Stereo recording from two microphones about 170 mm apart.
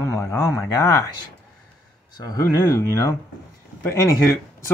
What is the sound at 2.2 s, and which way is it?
Speech, 20° left (ahead or behind).